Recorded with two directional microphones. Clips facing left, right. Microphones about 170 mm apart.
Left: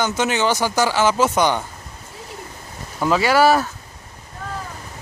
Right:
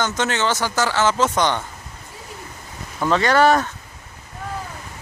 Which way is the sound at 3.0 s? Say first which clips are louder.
Left 1 dB; 5° left (ahead or behind).